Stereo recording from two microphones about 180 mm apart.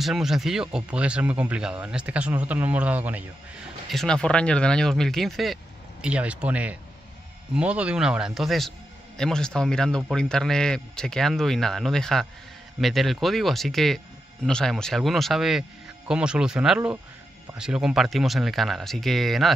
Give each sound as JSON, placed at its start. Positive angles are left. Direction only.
{"t": 0.0, "sound": "speech", "side_deg": 0}